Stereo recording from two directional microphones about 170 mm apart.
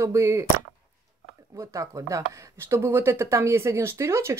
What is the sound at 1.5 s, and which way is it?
Speech, 20° right (ahead or behind).